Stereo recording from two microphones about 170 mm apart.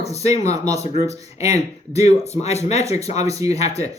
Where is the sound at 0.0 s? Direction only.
40° left (ahead or behind).